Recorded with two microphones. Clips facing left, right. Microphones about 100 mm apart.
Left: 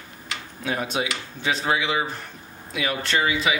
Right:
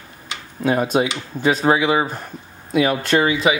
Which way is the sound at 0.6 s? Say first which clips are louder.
Right 9 dB; 45° right (ahead or behind).